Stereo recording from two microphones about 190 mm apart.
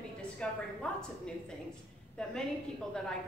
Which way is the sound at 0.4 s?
5° left (ahead or behind).